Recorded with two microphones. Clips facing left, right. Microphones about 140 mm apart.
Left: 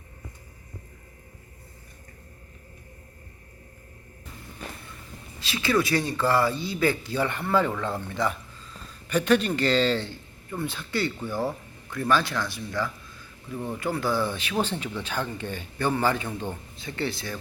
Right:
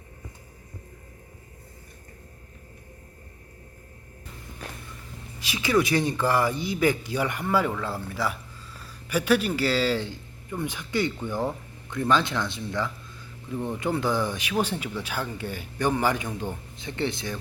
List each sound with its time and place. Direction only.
5.4 s speech: 15° right (ahead or behind)